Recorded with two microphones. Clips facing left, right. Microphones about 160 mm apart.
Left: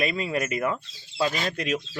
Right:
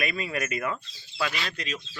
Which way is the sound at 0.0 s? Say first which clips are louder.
Left 4 dB; 25° left (ahead or behind).